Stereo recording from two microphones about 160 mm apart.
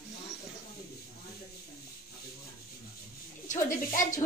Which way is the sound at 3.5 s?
55° left (ahead or behind).